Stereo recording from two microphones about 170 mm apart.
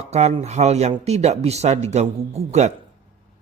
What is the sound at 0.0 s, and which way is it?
Speech, 40° right (ahead or behind).